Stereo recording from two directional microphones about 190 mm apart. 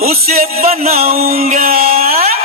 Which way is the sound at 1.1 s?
50° right (ahead or behind).